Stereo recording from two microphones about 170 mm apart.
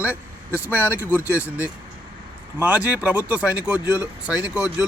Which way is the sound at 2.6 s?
10° right (ahead or behind).